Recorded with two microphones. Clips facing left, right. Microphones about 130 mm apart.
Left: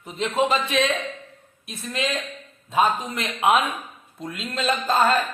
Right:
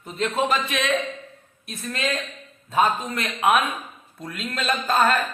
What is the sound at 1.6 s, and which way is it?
A man's voice, 15° left (ahead or behind).